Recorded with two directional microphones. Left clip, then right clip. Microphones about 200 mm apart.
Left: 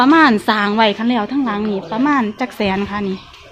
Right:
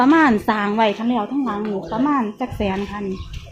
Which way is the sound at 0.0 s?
5° left (ahead or behind).